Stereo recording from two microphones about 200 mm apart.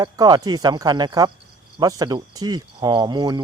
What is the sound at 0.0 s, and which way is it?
Speech, 20° right (ahead or behind).